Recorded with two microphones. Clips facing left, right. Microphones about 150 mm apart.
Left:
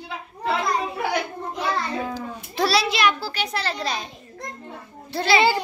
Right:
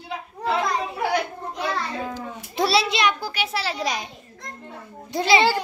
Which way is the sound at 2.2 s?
20° right (ahead or behind).